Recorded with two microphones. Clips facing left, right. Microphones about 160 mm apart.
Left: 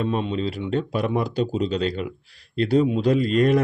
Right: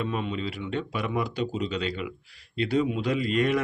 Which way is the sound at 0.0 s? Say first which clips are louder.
Left 6 dB; 30° left (ahead or behind).